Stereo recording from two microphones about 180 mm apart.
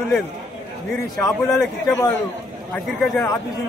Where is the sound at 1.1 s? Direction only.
15° left (ahead or behind).